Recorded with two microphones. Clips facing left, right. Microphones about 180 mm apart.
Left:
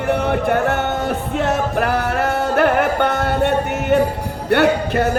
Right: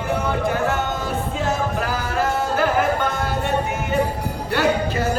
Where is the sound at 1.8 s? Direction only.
65° left (ahead or behind).